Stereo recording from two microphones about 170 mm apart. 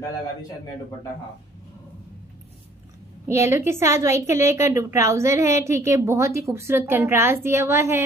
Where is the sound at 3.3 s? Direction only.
15° right (ahead or behind).